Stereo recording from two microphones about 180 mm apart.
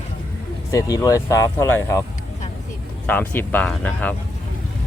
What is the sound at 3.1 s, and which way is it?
Speech, 10° left (ahead or behind).